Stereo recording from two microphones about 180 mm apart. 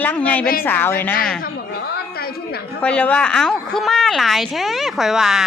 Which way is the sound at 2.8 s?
5° left (ahead or behind).